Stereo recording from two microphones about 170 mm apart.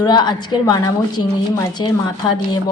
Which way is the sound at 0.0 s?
25° left (ahead or behind).